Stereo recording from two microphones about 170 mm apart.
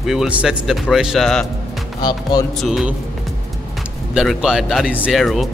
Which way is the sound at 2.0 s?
25° left (ahead or behind).